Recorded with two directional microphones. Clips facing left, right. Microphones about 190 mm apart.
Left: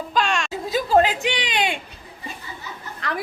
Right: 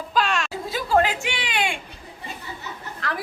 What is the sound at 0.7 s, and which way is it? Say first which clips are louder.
A woman's voice: left 3 dB; 20° left (ahead or behind).